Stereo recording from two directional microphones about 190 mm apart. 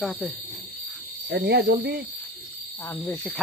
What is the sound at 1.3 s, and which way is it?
Speech, 60° right (ahead or behind).